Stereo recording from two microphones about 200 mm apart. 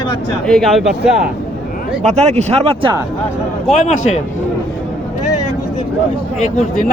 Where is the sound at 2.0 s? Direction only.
35° right (ahead or behind).